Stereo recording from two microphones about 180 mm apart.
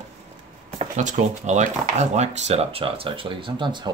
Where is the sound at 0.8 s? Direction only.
45° right (ahead or behind).